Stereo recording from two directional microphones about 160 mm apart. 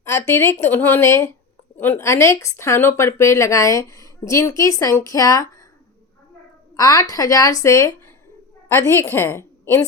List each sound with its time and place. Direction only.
0.0 s speech: 15° left (ahead or behind)
6.7 s a woman's voice: 20° left (ahead or behind)